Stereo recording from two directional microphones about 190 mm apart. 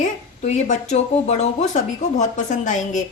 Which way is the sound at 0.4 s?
35° left (ahead or behind).